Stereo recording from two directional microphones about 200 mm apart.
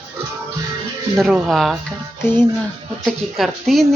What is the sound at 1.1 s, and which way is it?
Speech, centre (ahead or behind).